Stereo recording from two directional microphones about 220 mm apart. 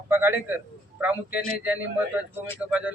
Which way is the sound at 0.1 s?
10° right (ahead or behind).